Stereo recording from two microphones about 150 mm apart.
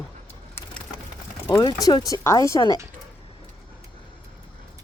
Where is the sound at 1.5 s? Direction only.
25° left (ahead or behind).